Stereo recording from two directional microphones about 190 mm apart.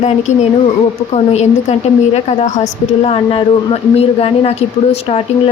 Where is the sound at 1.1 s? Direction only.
35° left (ahead or behind).